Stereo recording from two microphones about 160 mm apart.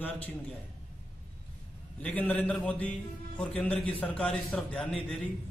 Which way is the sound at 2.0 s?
10° left (ahead or behind).